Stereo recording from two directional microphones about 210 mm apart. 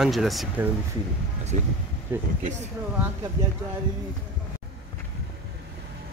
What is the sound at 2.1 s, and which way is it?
Speech, 10° right (ahead or behind).